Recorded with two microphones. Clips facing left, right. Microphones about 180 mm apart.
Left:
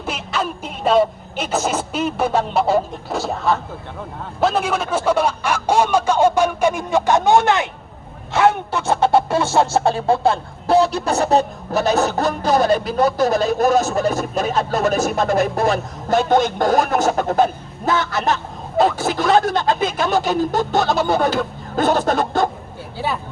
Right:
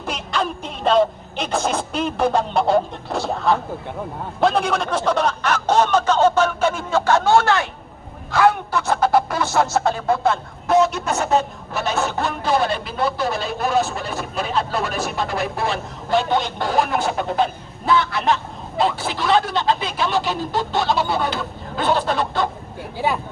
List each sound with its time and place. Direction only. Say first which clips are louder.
0.0 s a man's voice: even; 5° left (ahead or behind); by 22.4 s 45° left (ahead or behind)